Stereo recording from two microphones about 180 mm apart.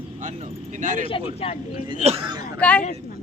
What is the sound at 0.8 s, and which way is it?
Speech, 45° right (ahead or behind).